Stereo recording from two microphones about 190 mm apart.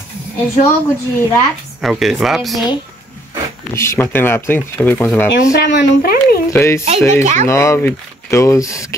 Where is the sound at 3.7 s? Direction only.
15° left (ahead or behind).